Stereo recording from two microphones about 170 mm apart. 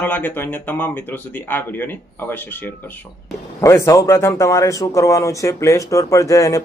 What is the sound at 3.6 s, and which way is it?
A man's voice, 20° left (ahead or behind).